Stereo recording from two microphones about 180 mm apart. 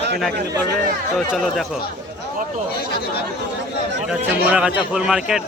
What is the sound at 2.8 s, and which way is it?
Speech, 60° left (ahead or behind).